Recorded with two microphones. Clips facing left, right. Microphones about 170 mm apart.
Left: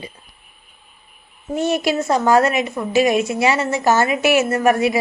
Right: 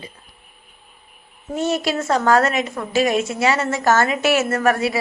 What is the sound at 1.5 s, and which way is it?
A woman's voice, 15° left (ahead or behind).